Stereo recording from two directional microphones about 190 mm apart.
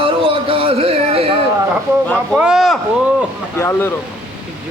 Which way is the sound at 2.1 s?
Centre (ahead or behind).